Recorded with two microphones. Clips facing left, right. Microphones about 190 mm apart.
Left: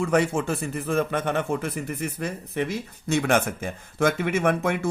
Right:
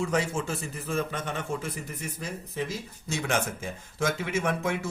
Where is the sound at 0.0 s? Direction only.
60° left (ahead or behind).